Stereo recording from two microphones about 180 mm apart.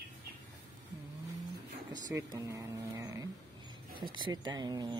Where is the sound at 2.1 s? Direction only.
15° right (ahead or behind).